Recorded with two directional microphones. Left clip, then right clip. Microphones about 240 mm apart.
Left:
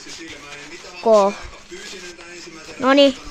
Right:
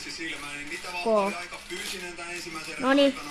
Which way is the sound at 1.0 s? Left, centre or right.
Centre.